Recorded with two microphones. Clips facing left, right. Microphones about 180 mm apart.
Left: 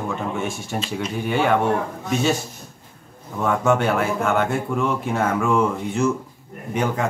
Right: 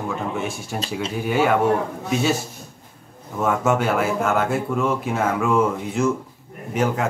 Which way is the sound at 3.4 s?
5° right (ahead or behind).